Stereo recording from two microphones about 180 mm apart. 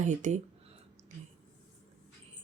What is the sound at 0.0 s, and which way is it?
Speech, 40° right (ahead or behind).